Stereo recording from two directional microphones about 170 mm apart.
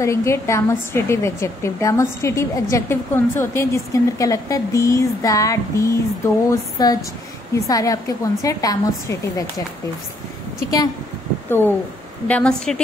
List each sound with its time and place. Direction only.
0.0 s a woman's voice: 15° left (ahead or behind)
11.4 s a woman's voice: 15° left (ahead or behind)